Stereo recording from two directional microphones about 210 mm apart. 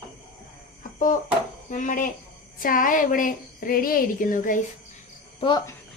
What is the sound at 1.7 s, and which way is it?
A woman's voice, 35° left (ahead or behind).